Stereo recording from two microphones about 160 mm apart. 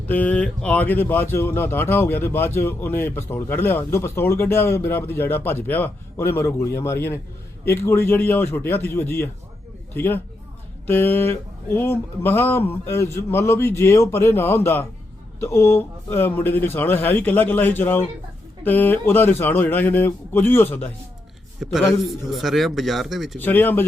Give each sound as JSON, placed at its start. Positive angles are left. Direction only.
{"t": 0.1, "sound": "a man's voice", "side_deg": 10}
{"t": 21.6, "sound": "a man's voice", "side_deg": 0}
{"t": 23.4, "sound": "speech", "side_deg": 10}